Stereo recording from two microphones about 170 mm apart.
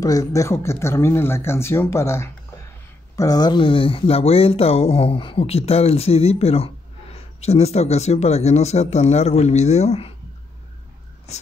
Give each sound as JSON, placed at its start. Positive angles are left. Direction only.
{"t": 0.0, "sound": "speech", "side_deg": 20}